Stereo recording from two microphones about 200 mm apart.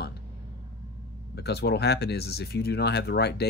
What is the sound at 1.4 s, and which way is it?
Speech, 55° left (ahead or behind).